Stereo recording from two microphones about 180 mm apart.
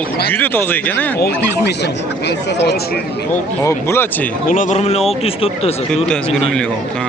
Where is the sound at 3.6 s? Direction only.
15° left (ahead or behind).